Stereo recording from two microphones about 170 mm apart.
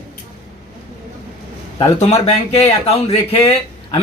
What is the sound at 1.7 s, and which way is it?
Speech, 40° left (ahead or behind).